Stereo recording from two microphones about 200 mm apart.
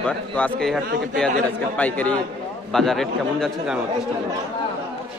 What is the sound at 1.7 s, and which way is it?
A man's voice, 5° left (ahead or behind).